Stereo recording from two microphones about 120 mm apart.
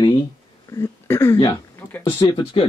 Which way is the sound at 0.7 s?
25° left (ahead or behind).